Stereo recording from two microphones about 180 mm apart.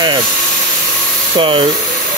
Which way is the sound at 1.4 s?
30° right (ahead or behind).